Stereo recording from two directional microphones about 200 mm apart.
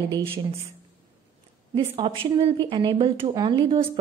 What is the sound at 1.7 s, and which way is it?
Speech, 25° right (ahead or behind).